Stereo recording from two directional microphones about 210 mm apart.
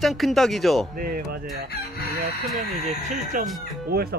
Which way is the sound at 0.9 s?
45° right (ahead or behind).